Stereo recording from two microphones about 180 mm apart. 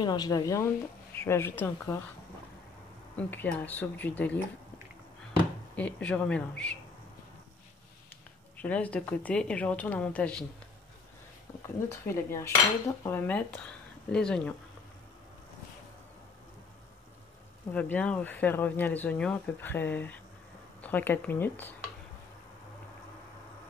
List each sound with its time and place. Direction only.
0.0 s speech: 25° left (ahead or behind)
3.2 s speech: 10° left (ahead or behind)
5.8 s speech: 10° left (ahead or behind)
8.5 s speech: 10° left (ahead or behind)
11.6 s speech: 15° left (ahead or behind)
17.7 s speech: 10° left (ahead or behind)